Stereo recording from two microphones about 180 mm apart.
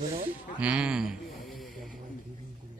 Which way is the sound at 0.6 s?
5° right (ahead or behind).